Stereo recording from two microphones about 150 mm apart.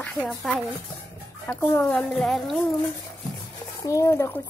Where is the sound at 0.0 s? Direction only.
10° left (ahead or behind).